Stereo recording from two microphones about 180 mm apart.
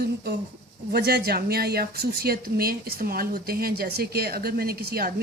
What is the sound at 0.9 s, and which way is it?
A woman's voice, 60° right (ahead or behind).